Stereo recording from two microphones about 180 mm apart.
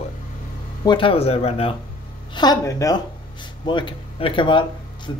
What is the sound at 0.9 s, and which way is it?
Speech, 30° left (ahead or behind).